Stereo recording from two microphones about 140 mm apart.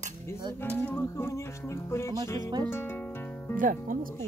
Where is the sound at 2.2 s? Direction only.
20° left (ahead or behind).